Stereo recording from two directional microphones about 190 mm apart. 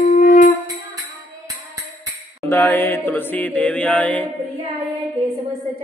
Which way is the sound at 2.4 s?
10° left (ahead or behind).